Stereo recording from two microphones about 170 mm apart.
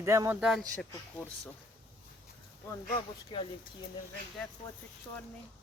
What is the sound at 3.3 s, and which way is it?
Speech, 25° left (ahead or behind).